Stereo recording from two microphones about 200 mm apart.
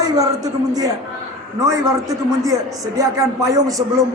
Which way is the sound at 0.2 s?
20° right (ahead or behind).